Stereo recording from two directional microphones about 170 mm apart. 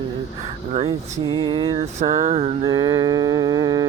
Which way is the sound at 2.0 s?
40° right (ahead or behind).